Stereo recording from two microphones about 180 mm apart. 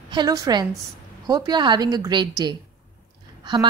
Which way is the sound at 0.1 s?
20° right (ahead or behind).